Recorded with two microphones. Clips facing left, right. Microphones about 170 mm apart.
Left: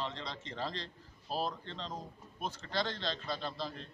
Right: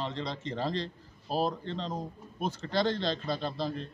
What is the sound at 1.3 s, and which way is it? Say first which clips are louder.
A man's voice: right 7 dB; 50° right (ahead or behind).